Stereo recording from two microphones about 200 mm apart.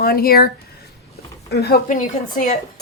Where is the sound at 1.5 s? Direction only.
50° left (ahead or behind).